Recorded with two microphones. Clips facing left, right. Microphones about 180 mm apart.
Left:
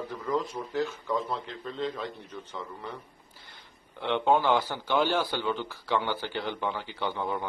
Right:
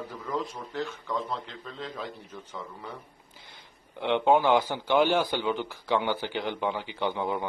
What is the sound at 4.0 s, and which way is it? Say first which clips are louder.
A man's voice: right 2 dB; 15° right (ahead or behind).